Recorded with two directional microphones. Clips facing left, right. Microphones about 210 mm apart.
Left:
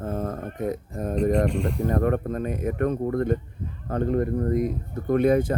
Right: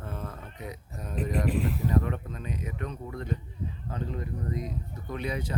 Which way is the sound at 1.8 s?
50° left (ahead or behind).